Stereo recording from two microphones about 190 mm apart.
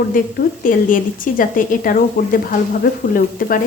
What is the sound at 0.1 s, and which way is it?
Speech, 45° left (ahead or behind).